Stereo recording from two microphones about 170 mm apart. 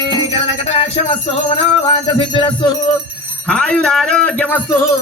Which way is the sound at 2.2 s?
30° left (ahead or behind).